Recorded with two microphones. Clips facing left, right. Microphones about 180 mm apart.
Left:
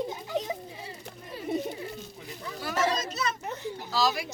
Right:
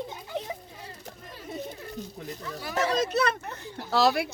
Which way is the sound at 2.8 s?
60° right (ahead or behind).